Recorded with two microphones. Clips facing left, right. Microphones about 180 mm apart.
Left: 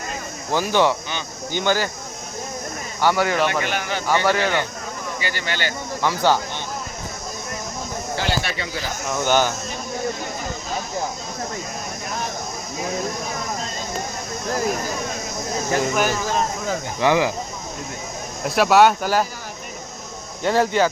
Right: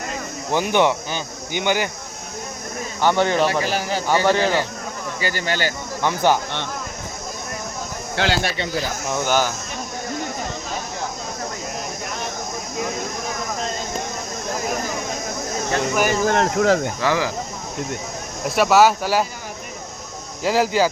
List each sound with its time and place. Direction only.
0.5 s speech: 20° right (ahead or behind)
3.0 s a man's voice: 20° right (ahead or behind)
5.2 s a man's voice: 40° right (ahead or behind)
6.0 s speech: 15° right (ahead or behind)
8.1 s speech: 80° right
9.0 s speech: 10° right (ahead or behind)
16.2 s speech: 65° right (ahead or behind)
17.0 s speech: 20° left (ahead or behind)
18.4 s speech: centre (ahead or behind)
20.4 s speech: 5° right (ahead or behind)